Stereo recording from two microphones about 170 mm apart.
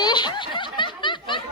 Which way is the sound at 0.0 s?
25° left (ahead or behind).